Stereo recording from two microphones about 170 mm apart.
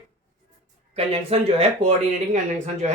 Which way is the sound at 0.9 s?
35° right (ahead or behind).